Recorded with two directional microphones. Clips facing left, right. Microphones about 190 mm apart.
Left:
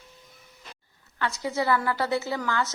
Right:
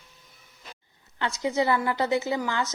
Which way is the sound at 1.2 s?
20° right (ahead or behind).